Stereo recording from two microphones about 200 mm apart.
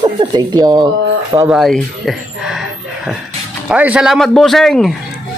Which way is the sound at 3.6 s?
5° right (ahead or behind).